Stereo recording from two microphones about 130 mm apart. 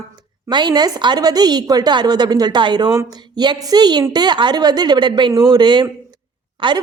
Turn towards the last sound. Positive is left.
turn(degrees=-40)  # may be behind; listen again after turning